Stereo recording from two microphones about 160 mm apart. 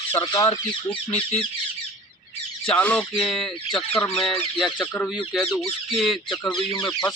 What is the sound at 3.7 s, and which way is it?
Speech, 35° left (ahead or behind).